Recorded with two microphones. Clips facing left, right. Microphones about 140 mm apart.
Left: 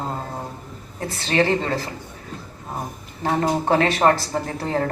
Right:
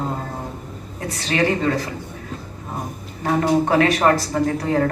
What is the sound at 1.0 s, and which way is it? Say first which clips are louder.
Speech: even; 30° left (ahead or behind).